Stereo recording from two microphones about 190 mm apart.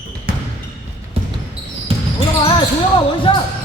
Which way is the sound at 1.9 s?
30° right (ahead or behind).